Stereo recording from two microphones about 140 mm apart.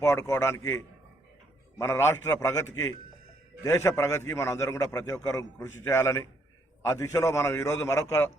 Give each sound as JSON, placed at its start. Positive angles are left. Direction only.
{"t": 0.0, "sound": "a man's voice", "side_deg": 20}